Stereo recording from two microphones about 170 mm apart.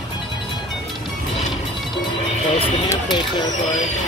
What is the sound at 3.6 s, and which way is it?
Speech, 45° left (ahead or behind).